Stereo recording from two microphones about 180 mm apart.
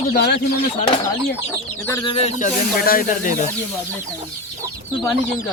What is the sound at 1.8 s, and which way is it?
Speech, 15° left (ahead or behind).